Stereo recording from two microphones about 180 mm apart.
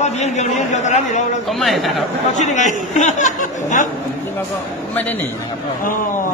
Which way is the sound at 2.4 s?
40° left (ahead or behind).